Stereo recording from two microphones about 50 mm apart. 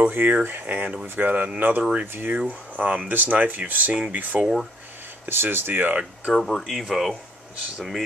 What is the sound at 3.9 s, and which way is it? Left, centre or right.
Speech, right.